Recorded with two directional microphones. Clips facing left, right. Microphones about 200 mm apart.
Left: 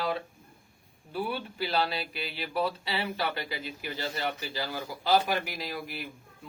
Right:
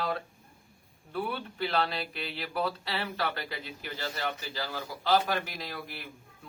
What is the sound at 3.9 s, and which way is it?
A man's voice, 15° left (ahead or behind).